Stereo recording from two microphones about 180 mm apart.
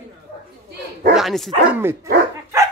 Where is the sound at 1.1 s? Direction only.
Centre (ahead or behind).